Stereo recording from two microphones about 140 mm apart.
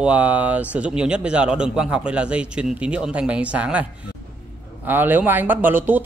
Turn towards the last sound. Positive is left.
turn(degrees=-15)  # may be behind; listen again after turning